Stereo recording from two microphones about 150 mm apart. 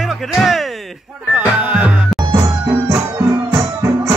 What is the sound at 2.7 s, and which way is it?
Music, 20° right (ahead or behind).